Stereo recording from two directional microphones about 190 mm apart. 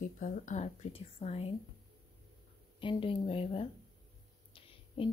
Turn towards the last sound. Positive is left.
turn(degrees=30)  # may be behind; listen again after turning